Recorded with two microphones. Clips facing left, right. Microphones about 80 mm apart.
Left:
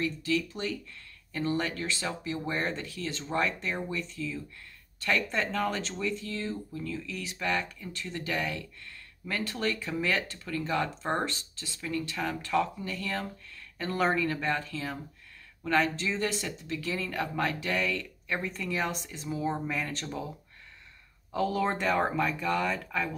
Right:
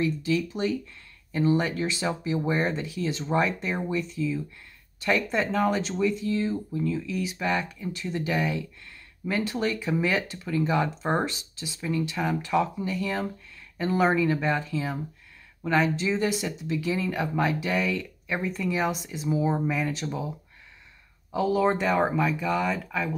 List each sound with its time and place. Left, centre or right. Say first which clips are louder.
0.0 s speech: right 4 dB; centre
21.3 s speech: right 5 dB; centre